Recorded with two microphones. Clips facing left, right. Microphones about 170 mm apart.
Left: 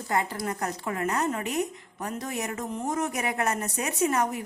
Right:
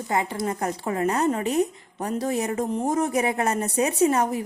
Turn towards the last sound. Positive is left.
turn(degrees=-30)  # may be behind; listen again after turning